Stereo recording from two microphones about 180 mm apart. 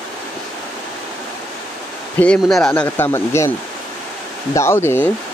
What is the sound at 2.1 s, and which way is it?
Speech, 5° left (ahead or behind).